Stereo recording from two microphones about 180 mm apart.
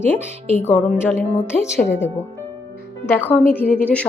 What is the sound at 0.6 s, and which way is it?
Speech, 15° left (ahead or behind).